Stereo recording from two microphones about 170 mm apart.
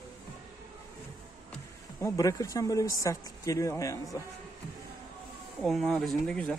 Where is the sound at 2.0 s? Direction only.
15° left (ahead or behind).